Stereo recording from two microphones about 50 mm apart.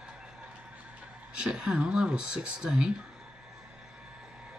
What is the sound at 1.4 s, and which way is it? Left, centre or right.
Speech, centre.